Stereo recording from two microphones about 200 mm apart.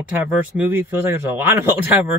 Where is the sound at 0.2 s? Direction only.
10° right (ahead or behind).